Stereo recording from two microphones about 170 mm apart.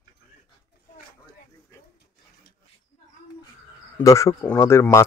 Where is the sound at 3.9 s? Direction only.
15° left (ahead or behind).